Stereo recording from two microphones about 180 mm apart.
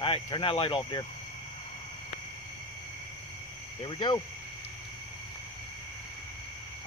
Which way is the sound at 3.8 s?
25° left (ahead or behind).